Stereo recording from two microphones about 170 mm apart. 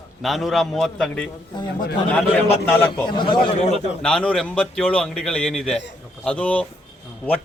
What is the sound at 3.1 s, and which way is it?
Speech, 30° left (ahead or behind).